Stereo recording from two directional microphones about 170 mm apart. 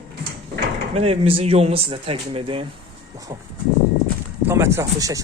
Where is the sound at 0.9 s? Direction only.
35° right (ahead or behind).